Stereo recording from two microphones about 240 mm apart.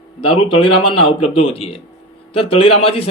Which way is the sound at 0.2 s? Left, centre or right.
Left.